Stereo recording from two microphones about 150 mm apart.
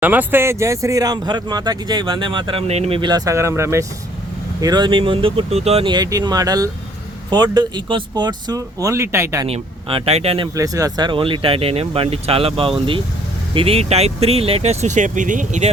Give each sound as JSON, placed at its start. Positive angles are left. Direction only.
{"t": 0.0, "sound": "speech", "side_deg": -10}
{"t": 4.6, "sound": "speech", "side_deg": -30}
{"t": 9.5, "sound": "speech", "side_deg": -40}
{"t": 10.5, "sound": "speech", "side_deg": -20}